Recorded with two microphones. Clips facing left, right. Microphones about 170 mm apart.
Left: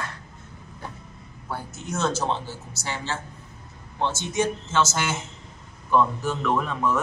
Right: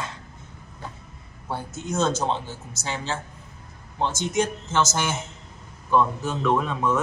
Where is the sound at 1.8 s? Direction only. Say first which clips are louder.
Right 2 dB; 20° right (ahead or behind).